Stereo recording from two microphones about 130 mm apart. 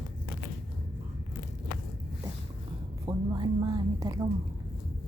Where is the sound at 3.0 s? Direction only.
35° right (ahead or behind).